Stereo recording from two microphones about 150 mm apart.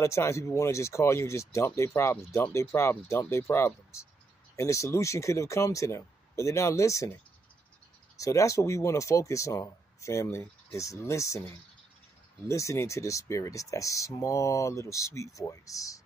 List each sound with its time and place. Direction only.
0.0 s speech: 20° left (ahead or behind)
8.2 s speech: 20° left (ahead or behind)